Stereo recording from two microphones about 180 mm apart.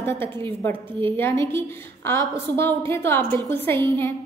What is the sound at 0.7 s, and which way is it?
A woman's voice, 15° left (ahead or behind).